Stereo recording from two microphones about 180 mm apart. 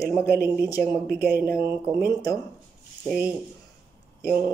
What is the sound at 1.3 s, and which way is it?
Speech, 10° right (ahead or behind).